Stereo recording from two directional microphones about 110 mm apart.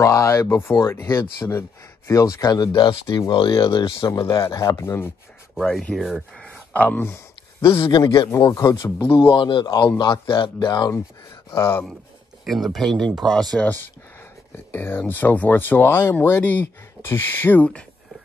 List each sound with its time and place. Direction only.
0.0 s speech: 25° left (ahead or behind); by 4.1 s 45° left (ahead or behind)
4.1 s speech: 35° left (ahead or behind)
5.5 s speech: centre (ahead or behind)
6.7 s speech: 15° left (ahead or behind)
8.0 s speech: 45° left (ahead or behind)
8.3 s speech: 30° left (ahead or behind)
9.3 s speech: 50° left (ahead or behind)
11.5 s speech: 25° left (ahead or behind)
12.4 s speech: centre (ahead or behind)
14.7 s speech: 20° left (ahead or behind)